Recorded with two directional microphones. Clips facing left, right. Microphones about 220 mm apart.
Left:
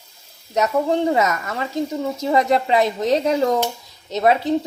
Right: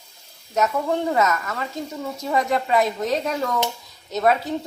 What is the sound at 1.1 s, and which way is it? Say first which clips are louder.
Speech: left 2 dB; 20° left (ahead or behind).